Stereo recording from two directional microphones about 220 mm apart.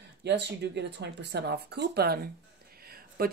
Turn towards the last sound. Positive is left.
turn(degrees=-45)  # may be behind; listen again after turning